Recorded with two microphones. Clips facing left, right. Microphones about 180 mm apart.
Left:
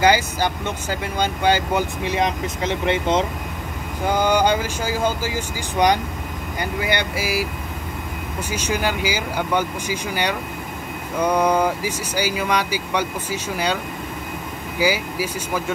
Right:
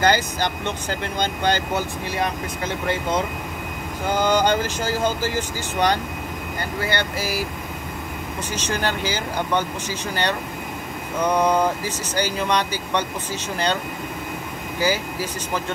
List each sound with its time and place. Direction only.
0.0 s speech: 10° left (ahead or behind)
2.0 s speech: 20° left (ahead or behind)
4.1 s speech: 10° left (ahead or behind)
8.5 s speech: 10° left (ahead or behind)
14.8 s speech: 10° left (ahead or behind)